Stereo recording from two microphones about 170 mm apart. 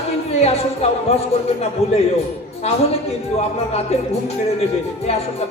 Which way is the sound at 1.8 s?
35° left (ahead or behind).